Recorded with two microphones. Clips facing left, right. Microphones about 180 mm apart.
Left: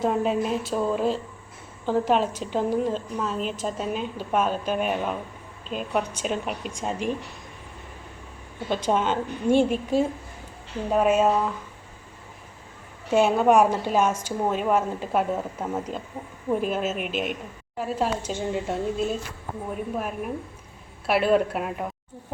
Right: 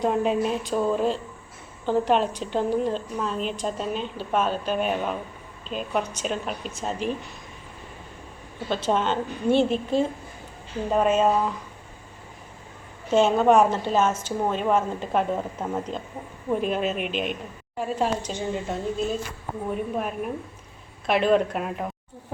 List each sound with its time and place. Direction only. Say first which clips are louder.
0.0 s a woman's voice: right 1 dB; centre (ahead or behind)
8.7 s a woman's voice: even; 10° left (ahead or behind)
13.1 s a woman's voice: right 1 dB; 10° left (ahead or behind)